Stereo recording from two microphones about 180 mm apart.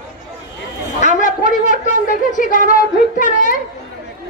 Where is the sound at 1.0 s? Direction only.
45° left (ahead or behind).